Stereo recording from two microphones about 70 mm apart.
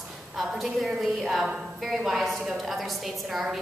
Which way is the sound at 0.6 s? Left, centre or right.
Centre.